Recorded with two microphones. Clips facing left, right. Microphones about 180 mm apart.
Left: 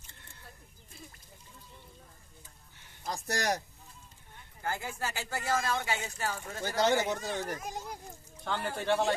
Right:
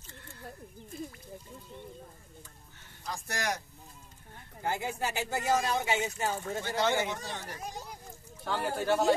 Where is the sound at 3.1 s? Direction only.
40° left (ahead or behind).